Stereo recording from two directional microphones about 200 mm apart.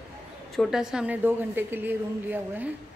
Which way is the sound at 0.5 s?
Centre (ahead or behind).